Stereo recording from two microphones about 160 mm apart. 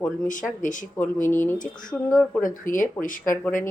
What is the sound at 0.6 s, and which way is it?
Speech, 55° left (ahead or behind).